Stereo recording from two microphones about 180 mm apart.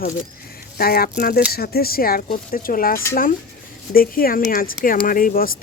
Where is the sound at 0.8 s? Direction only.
55° left (ahead or behind).